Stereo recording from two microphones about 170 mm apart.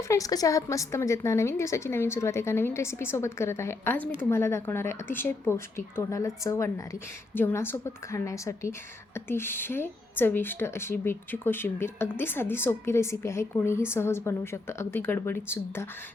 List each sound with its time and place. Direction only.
0.1 s a woman's voice: 20° left (ahead or behind)